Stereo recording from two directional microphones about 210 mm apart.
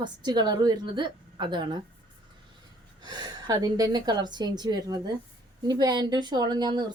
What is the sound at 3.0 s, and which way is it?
A woman's voice, 20° right (ahead or behind).